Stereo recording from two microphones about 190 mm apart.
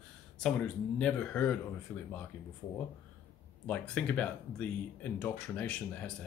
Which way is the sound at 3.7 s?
5° left (ahead or behind).